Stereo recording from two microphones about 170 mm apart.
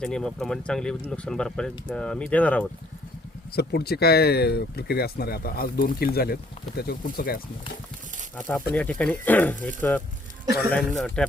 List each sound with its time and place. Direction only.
0.0 s speech: 5° left (ahead or behind)
3.5 s speech: 70° left (ahead or behind)
8.7 s speech: 5° left (ahead or behind)